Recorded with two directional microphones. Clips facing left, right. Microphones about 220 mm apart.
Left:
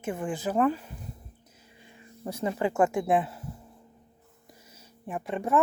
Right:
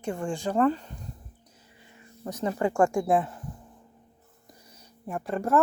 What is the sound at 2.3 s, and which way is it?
Speech, 10° left (ahead or behind).